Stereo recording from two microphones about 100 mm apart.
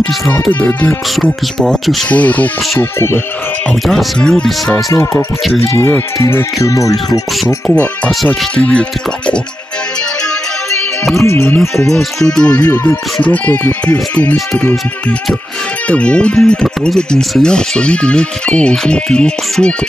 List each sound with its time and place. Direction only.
0.3 s speech: 20° left (ahead or behind)
2.0 s speech: 15° left (ahead or behind)
2.8 s music: 25° left (ahead or behind)
3.8 s speech: centre (ahead or behind)
6.1 s speech: 30° left (ahead or behind)
7.6 s speech: 15° left (ahead or behind)
11.2 s music: 20° left (ahead or behind)
11.7 s speech: 5° left (ahead or behind)
15.9 s speech: 10° left (ahead or behind)